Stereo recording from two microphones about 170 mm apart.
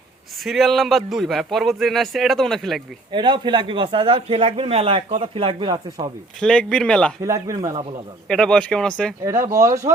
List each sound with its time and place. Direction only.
0.4 s speech: centre (ahead or behind)
3.1 s speech: 25° right (ahead or behind)
6.4 s speech: 5° left (ahead or behind)
7.2 s speech: 20° right (ahead or behind)
8.3 s speech: 5° left (ahead or behind)
9.2 s speech: 20° right (ahead or behind)